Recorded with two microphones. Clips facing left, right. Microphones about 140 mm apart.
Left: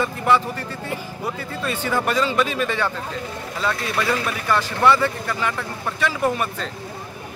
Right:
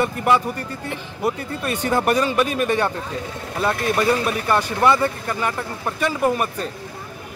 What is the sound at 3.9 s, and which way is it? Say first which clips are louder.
Speech: right 5 dB; 30° right (ahead or behind).